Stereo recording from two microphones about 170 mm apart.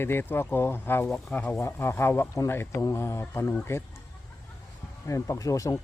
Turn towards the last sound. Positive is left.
turn(degrees=20)  # may be behind; listen again after turning